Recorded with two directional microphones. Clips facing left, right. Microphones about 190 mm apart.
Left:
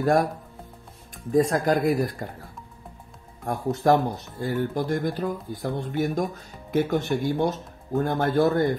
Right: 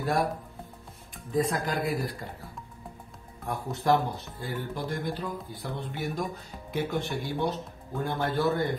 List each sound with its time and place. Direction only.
0.0 s speech: 45° left (ahead or behind)
1.3 s speech: 45° left (ahead or behind)
3.4 s speech: 45° left (ahead or behind)